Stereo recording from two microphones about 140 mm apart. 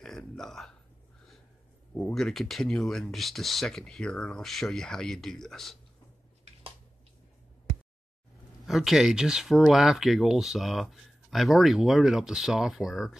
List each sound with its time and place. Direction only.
0.4 s speech: 5° left (ahead or behind)
2.0 s speech: 5° left (ahead or behind)
8.6 s speech: centre (ahead or behind)